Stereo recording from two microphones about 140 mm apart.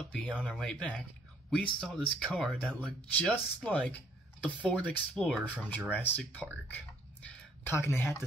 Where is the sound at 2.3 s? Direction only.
5° left (ahead or behind).